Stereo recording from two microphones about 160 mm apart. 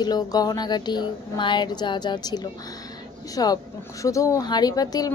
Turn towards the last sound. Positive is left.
turn(degrees=25)  # may be behind; listen again after turning